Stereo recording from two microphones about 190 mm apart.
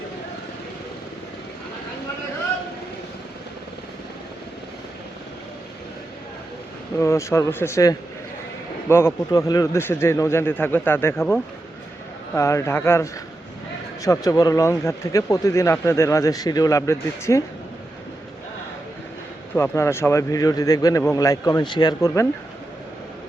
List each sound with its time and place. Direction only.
7.0 s speech: 15° left (ahead or behind)
19.5 s speech: 15° left (ahead or behind)